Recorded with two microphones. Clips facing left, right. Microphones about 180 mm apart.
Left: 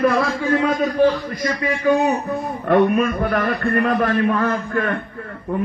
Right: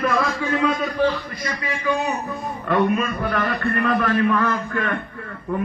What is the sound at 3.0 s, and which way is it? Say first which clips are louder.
A man's voice: left 4 dB; 50° left (ahead or behind).